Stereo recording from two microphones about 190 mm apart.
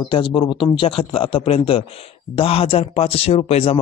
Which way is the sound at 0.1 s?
25° left (ahead or behind).